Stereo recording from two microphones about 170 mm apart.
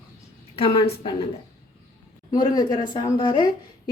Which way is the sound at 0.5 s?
35° left (ahead or behind).